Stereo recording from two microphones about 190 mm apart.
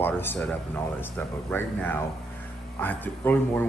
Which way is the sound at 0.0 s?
10° left (ahead or behind).